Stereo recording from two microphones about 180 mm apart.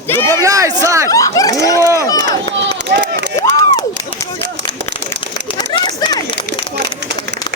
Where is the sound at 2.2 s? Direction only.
20° left (ahead or behind).